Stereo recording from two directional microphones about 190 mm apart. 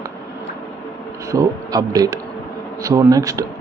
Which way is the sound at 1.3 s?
20° right (ahead or behind).